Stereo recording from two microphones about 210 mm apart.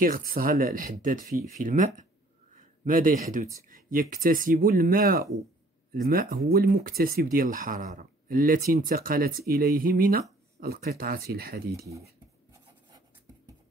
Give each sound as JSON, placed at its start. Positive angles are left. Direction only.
{"t": 0.0, "sound": "speech", "side_deg": -40}